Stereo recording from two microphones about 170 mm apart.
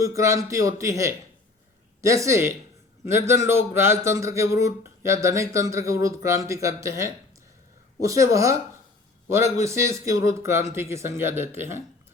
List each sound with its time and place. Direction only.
0.0 s a man's voice: 20° right (ahead or behind)
9.6 s a man's voice: 15° right (ahead or behind)